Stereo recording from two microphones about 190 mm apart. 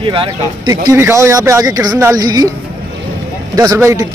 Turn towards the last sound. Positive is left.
turn(degrees=-15)  # may be behind; listen again after turning